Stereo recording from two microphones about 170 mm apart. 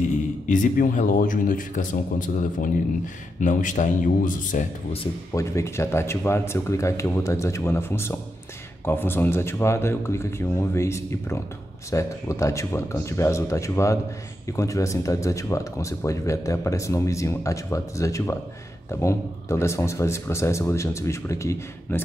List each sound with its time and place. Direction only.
0.5 s speech: 50° left (ahead or behind)
5.3 s speech: 15° left (ahead or behind)